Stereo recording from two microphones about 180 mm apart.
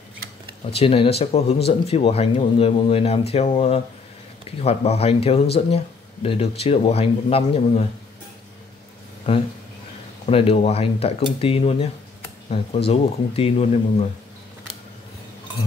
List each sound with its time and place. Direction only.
0.7 s speech: 30° left (ahead or behind)
10.2 s speech: 30° left (ahead or behind)